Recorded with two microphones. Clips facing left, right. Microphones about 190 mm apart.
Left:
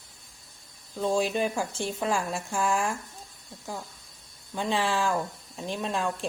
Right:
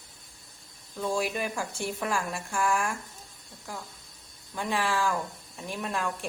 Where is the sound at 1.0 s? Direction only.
25° left (ahead or behind).